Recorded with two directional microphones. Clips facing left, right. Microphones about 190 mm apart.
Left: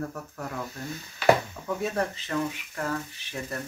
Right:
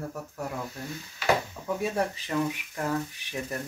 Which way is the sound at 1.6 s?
10° right (ahead or behind).